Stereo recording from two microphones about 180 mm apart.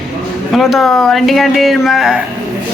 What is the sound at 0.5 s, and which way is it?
Speech, centre (ahead or behind).